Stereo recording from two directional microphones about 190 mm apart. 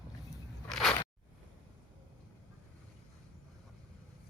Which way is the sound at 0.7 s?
Centre (ahead or behind).